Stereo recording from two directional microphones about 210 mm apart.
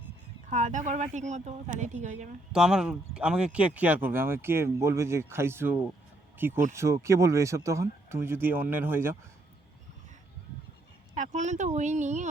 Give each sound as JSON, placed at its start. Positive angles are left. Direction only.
{"t": 0.5, "sound": "speech", "side_deg": -35}
{"t": 2.5, "sound": "speech", "side_deg": -5}
{"t": 11.1, "sound": "speech", "side_deg": -35}